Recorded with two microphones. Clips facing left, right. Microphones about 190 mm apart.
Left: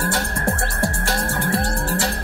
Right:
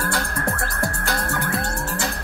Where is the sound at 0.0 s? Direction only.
25° left (ahead or behind).